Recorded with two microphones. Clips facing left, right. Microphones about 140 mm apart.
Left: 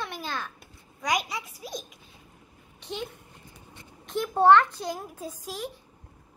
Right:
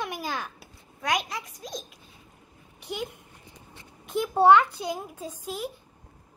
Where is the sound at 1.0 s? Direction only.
Centre (ahead or behind).